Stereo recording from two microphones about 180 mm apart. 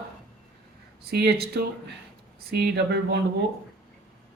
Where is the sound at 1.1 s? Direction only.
60° right (ahead or behind).